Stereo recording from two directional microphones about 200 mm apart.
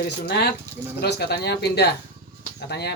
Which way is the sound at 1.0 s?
55° left (ahead or behind).